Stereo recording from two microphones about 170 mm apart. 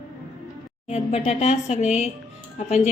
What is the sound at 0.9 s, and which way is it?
A woman's voice, 40° left (ahead or behind).